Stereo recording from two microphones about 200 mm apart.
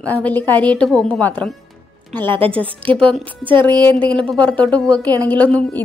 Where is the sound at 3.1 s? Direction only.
5° left (ahead or behind).